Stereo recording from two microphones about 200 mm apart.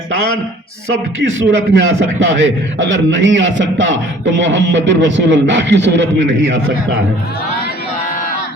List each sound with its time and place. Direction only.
1.2 s a man's voice: 65° right (ahead or behind)